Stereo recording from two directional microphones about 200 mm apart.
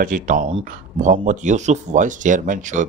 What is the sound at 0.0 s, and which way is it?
Speech, 40° right (ahead or behind).